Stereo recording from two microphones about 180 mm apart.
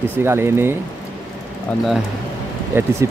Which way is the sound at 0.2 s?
15° right (ahead or behind).